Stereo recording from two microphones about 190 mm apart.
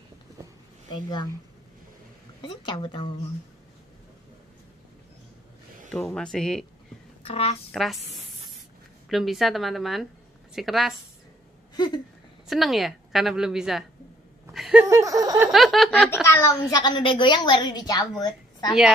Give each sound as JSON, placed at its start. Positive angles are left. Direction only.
{"t": 0.9, "sound": "a woman's voice", "side_deg": 20}
{"t": 2.4, "sound": "a woman's voice", "side_deg": 25}
{"t": 5.9, "sound": "a woman's voice", "side_deg": 5}
{"t": 7.2, "sound": "a woman's voice", "side_deg": 30}
{"t": 7.7, "sound": "a woman's voice", "side_deg": 0}
{"t": 9.1, "sound": "a woman's voice", "side_deg": 0}
{"t": 11.7, "sound": "a sound", "side_deg": 20}
{"t": 12.4, "sound": "a woman's voice", "side_deg": 0}
{"t": 15.5, "sound": "a woman's voice", "side_deg": 0}
{"t": 16.3, "sound": "a woman's voice", "side_deg": 15}